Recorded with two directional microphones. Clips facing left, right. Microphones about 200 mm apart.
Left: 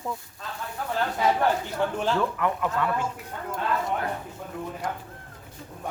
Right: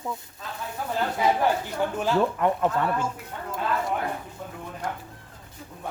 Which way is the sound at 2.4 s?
35° right (ahead or behind).